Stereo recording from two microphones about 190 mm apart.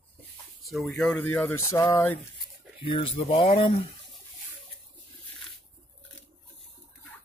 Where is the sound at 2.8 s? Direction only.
25° left (ahead or behind).